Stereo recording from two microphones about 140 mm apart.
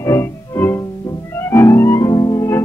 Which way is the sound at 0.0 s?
20° left (ahead or behind).